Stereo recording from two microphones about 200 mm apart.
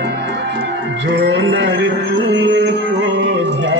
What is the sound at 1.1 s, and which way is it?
Music, 60° right (ahead or behind).